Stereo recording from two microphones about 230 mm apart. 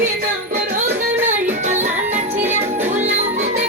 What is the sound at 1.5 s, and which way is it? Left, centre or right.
Music, right.